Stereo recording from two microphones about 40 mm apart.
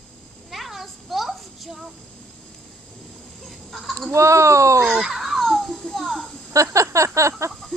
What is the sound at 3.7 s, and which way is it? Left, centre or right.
Chicken, centre.